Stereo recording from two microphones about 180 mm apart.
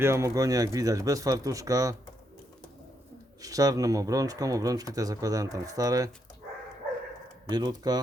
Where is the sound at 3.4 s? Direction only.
20° right (ahead or behind).